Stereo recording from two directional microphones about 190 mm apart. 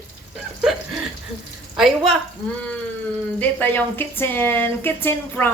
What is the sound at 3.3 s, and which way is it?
Speech, 10° left (ahead or behind).